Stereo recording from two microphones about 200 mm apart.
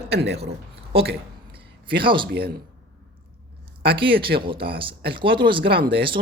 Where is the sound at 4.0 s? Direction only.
25° right (ahead or behind).